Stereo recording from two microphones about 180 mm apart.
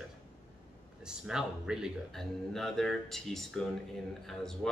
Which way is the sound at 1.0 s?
5° right (ahead or behind).